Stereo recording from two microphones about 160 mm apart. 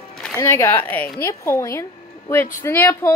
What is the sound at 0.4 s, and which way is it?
A woman's voice, 15° left (ahead or behind).